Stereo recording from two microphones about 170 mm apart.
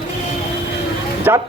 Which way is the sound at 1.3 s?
10° right (ahead or behind).